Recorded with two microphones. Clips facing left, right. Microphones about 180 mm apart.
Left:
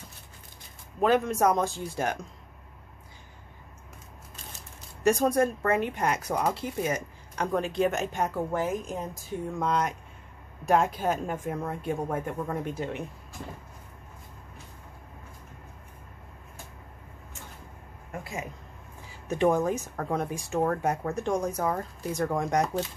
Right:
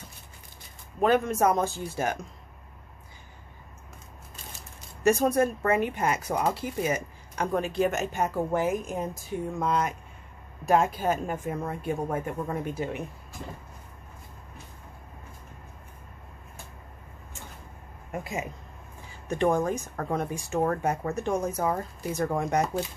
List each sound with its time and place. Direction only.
1.0 s speech: centre (ahead or behind)
5.0 s a woman's voice: 5° right (ahead or behind)
18.1 s speech: 20° right (ahead or behind)
19.2 s speech: 5° left (ahead or behind)